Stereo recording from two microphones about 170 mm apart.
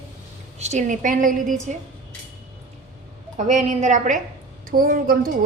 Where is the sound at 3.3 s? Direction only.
45° right (ahead or behind).